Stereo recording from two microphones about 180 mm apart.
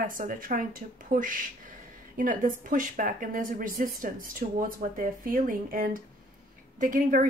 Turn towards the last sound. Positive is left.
turn(degrees=-50)  # may be behind; listen again after turning